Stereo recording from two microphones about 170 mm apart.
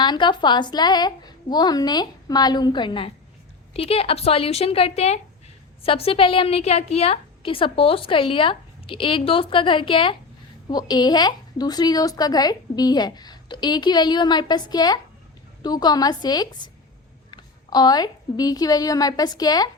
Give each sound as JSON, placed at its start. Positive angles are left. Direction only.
{"t": 0.0, "sound": "a woman's voice", "side_deg": 25}